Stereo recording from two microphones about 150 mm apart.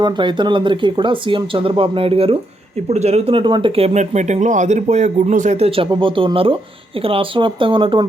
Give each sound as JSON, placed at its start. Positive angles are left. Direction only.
{"t": 0.0, "sound": "speech", "side_deg": -30}